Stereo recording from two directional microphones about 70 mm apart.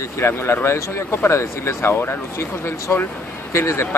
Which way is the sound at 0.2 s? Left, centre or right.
Left.